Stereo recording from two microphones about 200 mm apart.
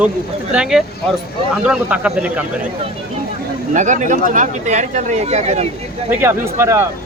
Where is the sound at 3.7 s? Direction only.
40° right (ahead or behind).